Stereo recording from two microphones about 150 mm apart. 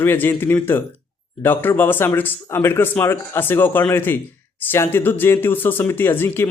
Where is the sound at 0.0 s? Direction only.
15° left (ahead or behind).